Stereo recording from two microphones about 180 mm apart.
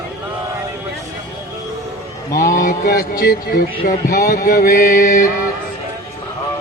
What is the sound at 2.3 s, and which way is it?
Mantra, 45° left (ahead or behind).